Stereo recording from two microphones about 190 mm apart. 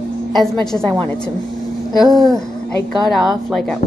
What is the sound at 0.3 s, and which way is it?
Speech, centre (ahead or behind).